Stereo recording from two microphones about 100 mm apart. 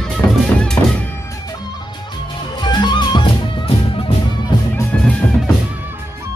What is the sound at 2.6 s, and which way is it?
Music, 50° left (ahead or behind).